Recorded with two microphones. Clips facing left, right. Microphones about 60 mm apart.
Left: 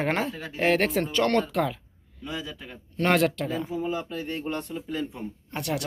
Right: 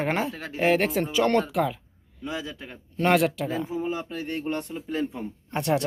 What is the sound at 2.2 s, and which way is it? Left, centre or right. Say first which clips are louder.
Speech: right 2 dB; centre.